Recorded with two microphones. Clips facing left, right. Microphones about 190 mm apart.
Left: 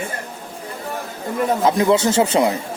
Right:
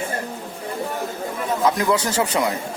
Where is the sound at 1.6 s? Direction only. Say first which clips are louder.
Left 3 dB; 25° left (ahead or behind).